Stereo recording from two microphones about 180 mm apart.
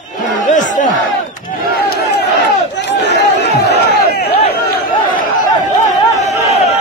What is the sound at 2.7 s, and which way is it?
Crowd, 75° left (ahead or behind).